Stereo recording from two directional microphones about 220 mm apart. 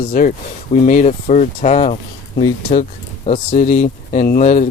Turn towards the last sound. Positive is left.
turn(degrees=35)  # may be behind; listen again after turning